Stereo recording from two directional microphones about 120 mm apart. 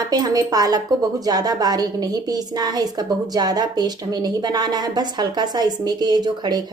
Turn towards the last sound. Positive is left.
turn(degrees=-35)  # may be behind; listen again after turning